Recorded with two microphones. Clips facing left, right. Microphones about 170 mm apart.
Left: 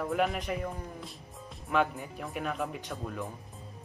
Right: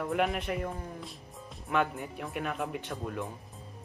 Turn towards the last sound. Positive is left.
turn(degrees=0)  # may be behind; listen again after turning